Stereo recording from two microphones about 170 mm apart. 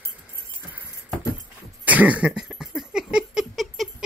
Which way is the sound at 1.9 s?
10° right (ahead or behind).